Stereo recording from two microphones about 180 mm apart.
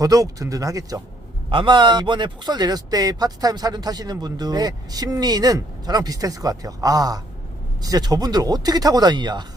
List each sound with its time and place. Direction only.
0.0 s a man's voice: 20° right (ahead or behind)